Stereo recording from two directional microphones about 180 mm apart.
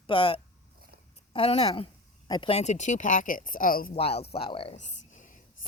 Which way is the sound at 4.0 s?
35° left (ahead or behind).